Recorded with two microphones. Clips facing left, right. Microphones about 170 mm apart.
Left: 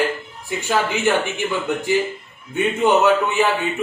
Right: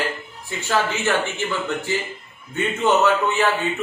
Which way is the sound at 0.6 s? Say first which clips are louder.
Left 1 dB; 15° left (ahead or behind).